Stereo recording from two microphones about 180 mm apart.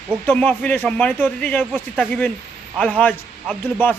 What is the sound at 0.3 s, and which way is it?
A man's voice, 10° left (ahead or behind).